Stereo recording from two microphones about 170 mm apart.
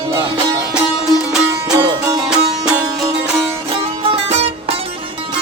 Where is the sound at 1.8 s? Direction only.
20° right (ahead or behind).